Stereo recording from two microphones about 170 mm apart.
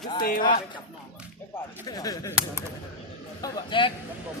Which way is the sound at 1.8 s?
20° left (ahead or behind).